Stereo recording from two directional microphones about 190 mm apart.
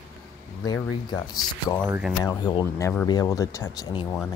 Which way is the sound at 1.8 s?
10° right (ahead or behind).